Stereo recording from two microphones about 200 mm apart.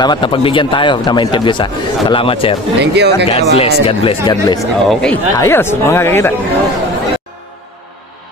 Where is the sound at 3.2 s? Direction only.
30° left (ahead or behind).